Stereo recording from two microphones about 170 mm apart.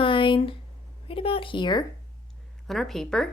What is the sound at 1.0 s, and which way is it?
Speech, 30° left (ahead or behind).